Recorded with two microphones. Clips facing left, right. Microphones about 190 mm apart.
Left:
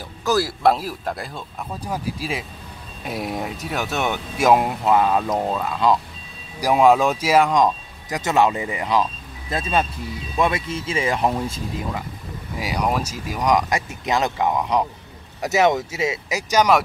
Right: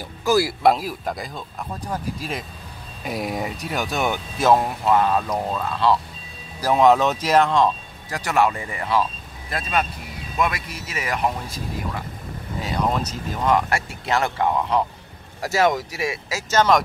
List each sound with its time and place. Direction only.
0.2 s speech: centre (ahead or behind)
4.4 s speech: 15° left (ahead or behind)
12.5 s speech: 10° left (ahead or behind)